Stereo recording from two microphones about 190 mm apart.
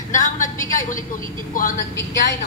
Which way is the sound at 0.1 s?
45° left (ahead or behind).